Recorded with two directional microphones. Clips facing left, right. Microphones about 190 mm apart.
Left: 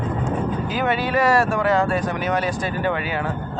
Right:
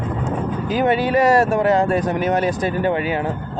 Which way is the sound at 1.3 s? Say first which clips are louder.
Right 2 dB; 45° right (ahead or behind).